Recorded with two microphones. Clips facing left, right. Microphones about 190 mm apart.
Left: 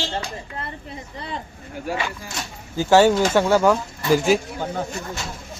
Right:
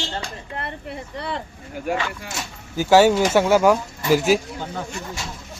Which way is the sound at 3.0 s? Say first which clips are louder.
Even; 10° right (ahead or behind).